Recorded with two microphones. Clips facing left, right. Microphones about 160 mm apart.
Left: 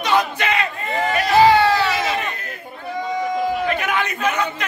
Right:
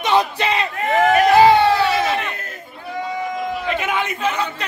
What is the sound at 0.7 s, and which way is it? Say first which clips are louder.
Speech: right 6 dB; 90° right.